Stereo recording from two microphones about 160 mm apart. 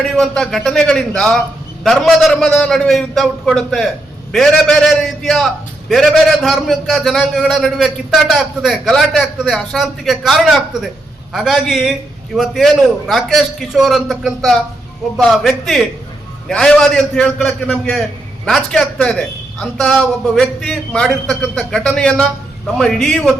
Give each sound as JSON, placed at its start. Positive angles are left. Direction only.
{"t": 0.0, "sound": "a man's voice", "side_deg": 5}